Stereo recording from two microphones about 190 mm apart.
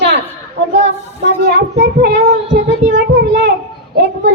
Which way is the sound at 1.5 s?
60° right (ahead or behind).